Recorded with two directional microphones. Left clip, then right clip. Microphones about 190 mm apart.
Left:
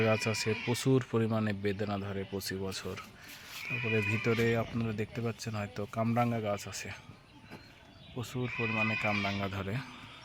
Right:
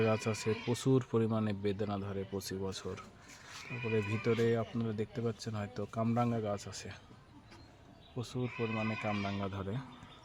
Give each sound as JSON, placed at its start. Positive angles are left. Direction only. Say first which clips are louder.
{"t": 0.0, "sound": "speech", "louder": "left 3 dB", "side_deg": 5}
{"t": 3.9, "sound": "speech", "louder": "left 1 dB", "side_deg": 20}
{"t": 8.1, "sound": "speech", "louder": "left 2 dB", "side_deg": 20}
{"t": 8.4, "sound": "speech", "louder": "left 6 dB", "side_deg": 30}
{"t": 8.9, "sound": "speech", "louder": "left 6 dB", "side_deg": 10}